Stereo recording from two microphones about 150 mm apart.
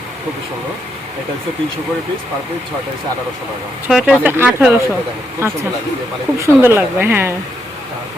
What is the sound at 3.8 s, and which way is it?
Speech, 10° right (ahead or behind).